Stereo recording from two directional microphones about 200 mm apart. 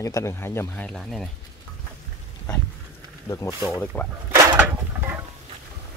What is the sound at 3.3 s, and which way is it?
Speech, 15° left (ahead or behind).